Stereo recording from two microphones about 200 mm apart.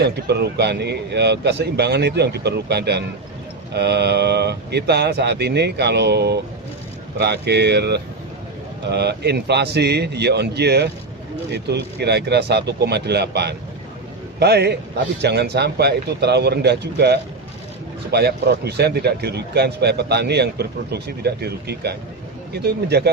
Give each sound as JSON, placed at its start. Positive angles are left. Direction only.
{"t": 0.0, "sound": "speech", "side_deg": -55}